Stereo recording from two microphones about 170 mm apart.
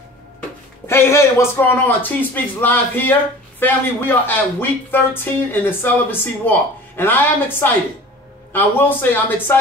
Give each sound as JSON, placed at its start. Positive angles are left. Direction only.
{"t": 0.8, "sound": "speech", "side_deg": 15}